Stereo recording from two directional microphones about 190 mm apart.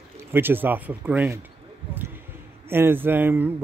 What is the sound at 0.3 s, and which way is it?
Speech, 10° right (ahead or behind).